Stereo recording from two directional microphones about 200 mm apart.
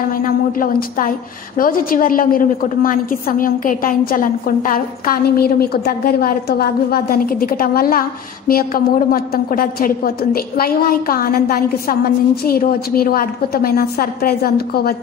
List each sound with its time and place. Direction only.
0.2 s a woman's voice: 45° left (ahead or behind)